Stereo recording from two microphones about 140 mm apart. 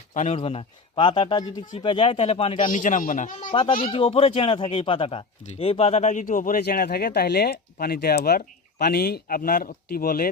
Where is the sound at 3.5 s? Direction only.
40° left (ahead or behind).